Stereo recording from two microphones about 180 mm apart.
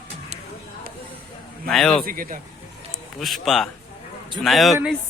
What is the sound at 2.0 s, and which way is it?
Speech, 50° right (ahead or behind).